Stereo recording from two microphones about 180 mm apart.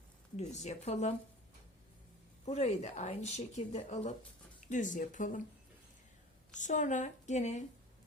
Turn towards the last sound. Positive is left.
turn(degrees=40)  # may be behind; listen again after turning